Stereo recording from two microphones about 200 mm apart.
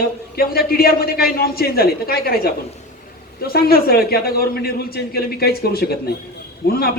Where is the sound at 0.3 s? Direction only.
50° left (ahead or behind).